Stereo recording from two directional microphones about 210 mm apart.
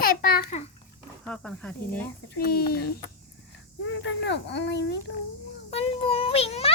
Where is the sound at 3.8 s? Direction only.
60° left (ahead or behind).